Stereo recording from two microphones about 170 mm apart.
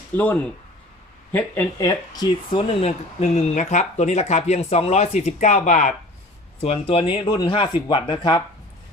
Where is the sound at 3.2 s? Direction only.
45° left (ahead or behind); by 8.4 s 25° left (ahead or behind).